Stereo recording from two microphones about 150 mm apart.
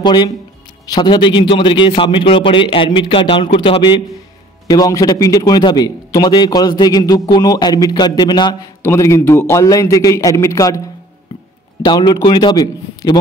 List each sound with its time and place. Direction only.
0.0 s a man's voice: 30° left (ahead or behind)
4.6 s a man's voice: 25° left (ahead or behind)
8.8 s a man's voice: 20° left (ahead or behind)
11.8 s a man's voice: 30° left (ahead or behind)